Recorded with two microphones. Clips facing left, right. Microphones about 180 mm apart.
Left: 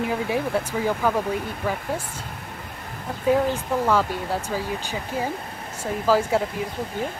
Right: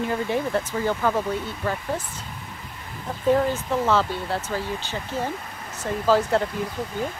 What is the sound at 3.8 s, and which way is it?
Speech, 10° left (ahead or behind).